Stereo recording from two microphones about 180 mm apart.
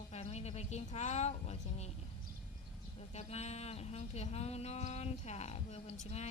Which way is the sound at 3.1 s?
40° left (ahead or behind).